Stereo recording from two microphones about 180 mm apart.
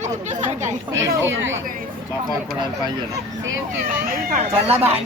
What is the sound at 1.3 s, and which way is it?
Speech, 90° right.